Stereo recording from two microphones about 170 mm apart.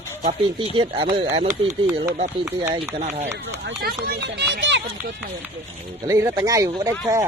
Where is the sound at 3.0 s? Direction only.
40° right (ahead or behind).